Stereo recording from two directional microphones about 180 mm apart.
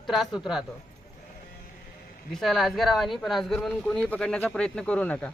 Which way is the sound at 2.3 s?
Centre (ahead or behind).